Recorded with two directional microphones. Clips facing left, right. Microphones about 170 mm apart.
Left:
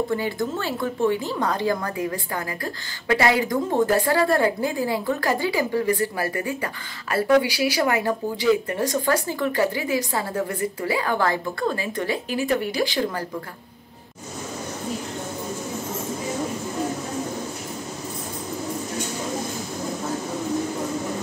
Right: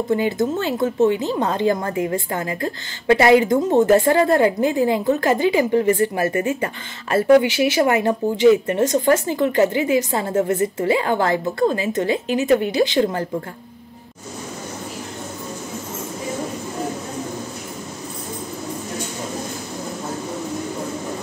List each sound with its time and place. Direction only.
0.1 s a woman's voice: 20° right (ahead or behind)